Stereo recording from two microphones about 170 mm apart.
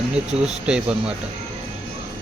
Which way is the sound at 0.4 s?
5° right (ahead or behind).